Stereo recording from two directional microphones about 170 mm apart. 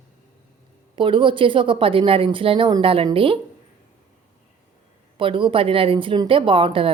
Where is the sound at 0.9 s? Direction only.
30° right (ahead or behind).